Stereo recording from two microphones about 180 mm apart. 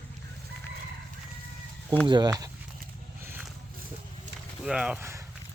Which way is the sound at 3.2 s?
10° right (ahead or behind).